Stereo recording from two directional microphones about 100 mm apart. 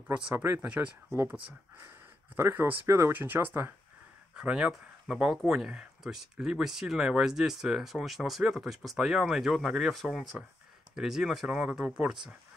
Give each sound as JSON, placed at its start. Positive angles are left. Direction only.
{"t": 0.4, "sound": "speech", "side_deg": -20}
{"t": 2.3, "sound": "speech", "side_deg": -20}
{"t": 4.4, "sound": "speech", "side_deg": -10}